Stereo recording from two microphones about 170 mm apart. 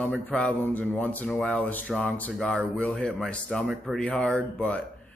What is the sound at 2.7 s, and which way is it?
Speech, 5° left (ahead or behind).